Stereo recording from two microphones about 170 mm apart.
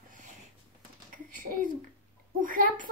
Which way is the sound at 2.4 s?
50° right (ahead or behind).